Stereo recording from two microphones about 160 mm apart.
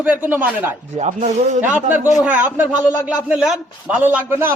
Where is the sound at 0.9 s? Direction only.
45° right (ahead or behind).